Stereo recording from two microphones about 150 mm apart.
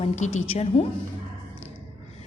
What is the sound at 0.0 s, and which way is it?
Speech, 45° left (ahead or behind).